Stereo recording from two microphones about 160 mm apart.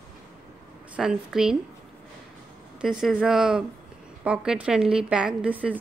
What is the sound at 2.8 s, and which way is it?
A woman's voice, 5° right (ahead or behind).